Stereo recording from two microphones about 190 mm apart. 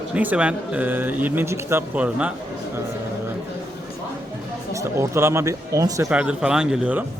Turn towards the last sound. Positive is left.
turn(degrees=-5)  # may be behind; listen again after turning